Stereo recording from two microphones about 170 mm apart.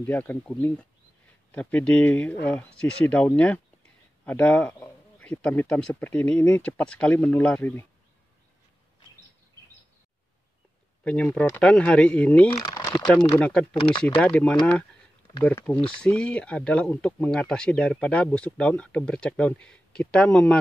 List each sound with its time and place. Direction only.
0.0 s speech: 10° left (ahead or behind)
11.1 s speech: 5° left (ahead or behind)
12.4 s speech: 25° left (ahead or behind)
13.4 s speech: 5° left (ahead or behind)